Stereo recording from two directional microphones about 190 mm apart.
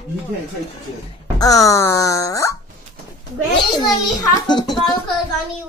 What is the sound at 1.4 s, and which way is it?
Speech, 20° left (ahead or behind).